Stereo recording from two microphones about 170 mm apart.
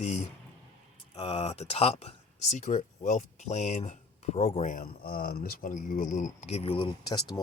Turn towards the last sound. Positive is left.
turn(degrees=25)  # may be behind; listen again after turning